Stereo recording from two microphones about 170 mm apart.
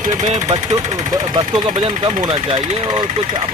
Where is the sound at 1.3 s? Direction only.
25° right (ahead or behind).